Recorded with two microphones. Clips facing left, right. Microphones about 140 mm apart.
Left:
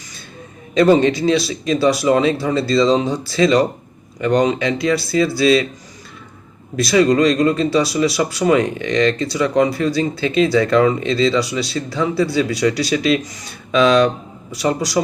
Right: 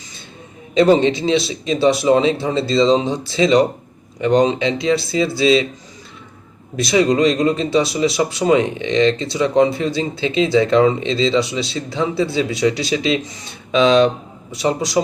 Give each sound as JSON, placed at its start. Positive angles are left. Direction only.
{"t": 0.7, "sound": "speech", "side_deg": -20}
{"t": 6.7, "sound": "speech", "side_deg": -20}